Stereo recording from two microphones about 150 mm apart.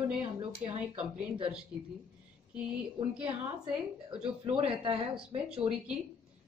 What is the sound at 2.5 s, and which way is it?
A woman's voice, 5° right (ahead or behind).